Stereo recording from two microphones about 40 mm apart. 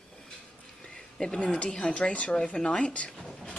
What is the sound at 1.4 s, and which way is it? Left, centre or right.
Speech, left.